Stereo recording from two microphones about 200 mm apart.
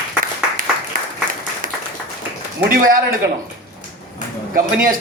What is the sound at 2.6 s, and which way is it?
Speech, 45° right (ahead or behind).